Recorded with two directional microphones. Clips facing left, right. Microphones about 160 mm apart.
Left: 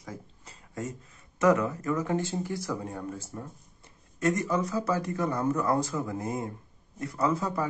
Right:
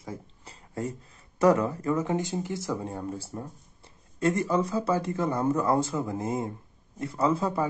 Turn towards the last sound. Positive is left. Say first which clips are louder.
# right 2 dB
turn(degrees=-25)  # may be behind; listen again after turning